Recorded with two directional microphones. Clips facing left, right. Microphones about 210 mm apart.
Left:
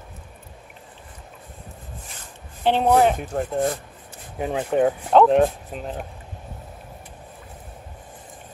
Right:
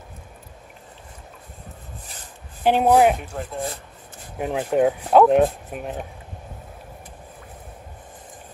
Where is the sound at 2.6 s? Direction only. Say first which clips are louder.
Right 1 dB; 10° right (ahead or behind).